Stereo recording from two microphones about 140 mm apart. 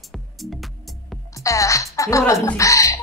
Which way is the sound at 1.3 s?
25° left (ahead or behind).